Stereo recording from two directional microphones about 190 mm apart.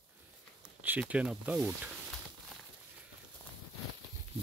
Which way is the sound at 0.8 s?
5° right (ahead or behind).